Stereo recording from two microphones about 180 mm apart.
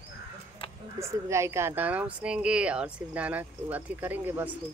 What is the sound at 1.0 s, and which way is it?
Speech, 15° right (ahead or behind).